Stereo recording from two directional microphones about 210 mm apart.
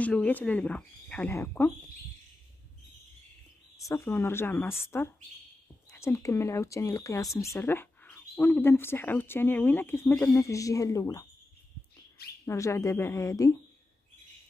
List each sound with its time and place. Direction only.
0.0 s speech: 5° left (ahead or behind)
3.8 s speech: 10° left (ahead or behind)
5.9 s speech: 15° left (ahead or behind)
12.4 s speech: 15° left (ahead or behind)